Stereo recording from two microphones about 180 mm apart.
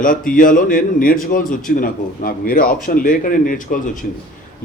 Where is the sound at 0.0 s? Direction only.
50° left (ahead or behind).